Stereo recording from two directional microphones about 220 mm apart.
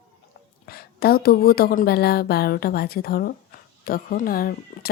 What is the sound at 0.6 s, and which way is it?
Speech, 45° left (ahead or behind).